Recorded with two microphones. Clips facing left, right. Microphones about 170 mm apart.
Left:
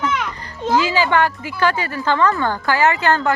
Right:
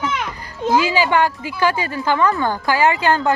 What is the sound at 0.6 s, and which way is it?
Speech, 15° right (ahead or behind).